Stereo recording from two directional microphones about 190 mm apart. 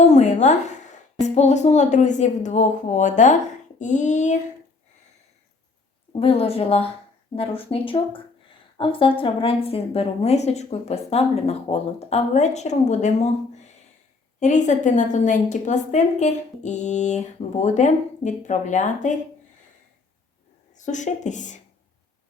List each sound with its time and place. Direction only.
0.0 s a woman's voice: 35° left (ahead or behind)
6.1 s a woman's voice: 30° left (ahead or behind)
20.7 s a woman's voice: 40° left (ahead or behind)